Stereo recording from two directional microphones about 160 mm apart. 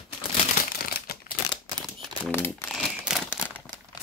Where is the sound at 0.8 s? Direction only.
70° left (ahead or behind).